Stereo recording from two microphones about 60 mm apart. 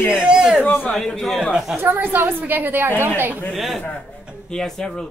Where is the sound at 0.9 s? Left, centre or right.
Centre.